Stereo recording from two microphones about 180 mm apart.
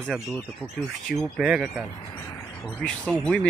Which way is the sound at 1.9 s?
25° left (ahead or behind).